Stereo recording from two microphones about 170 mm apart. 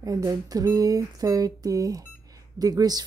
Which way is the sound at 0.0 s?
20° right (ahead or behind).